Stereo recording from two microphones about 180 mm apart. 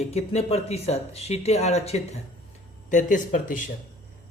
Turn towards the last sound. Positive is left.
turn(degrees=45)  # may be behind; listen again after turning